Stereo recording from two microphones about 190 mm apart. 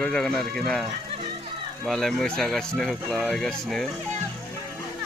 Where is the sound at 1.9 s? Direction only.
Centre (ahead or behind).